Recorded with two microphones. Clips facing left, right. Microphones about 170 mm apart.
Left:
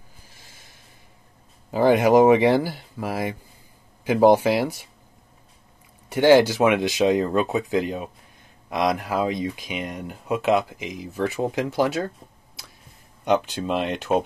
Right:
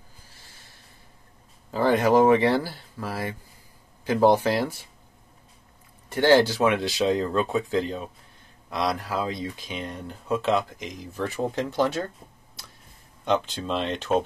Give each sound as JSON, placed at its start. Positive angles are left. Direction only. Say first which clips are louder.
{"t": 1.7, "sound": "speech", "louder": "left 4 dB", "side_deg": 15}
{"t": 6.0, "sound": "speech", "louder": "left 3 dB", "side_deg": 15}
{"t": 13.2, "sound": "speech", "louder": "left 3 dB", "side_deg": 10}